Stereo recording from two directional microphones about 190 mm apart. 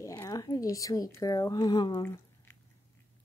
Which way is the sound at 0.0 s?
15° left (ahead or behind).